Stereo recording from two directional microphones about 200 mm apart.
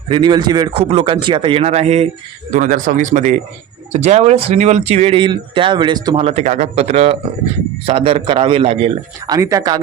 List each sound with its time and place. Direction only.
0.1 s speech: 20° right (ahead or behind)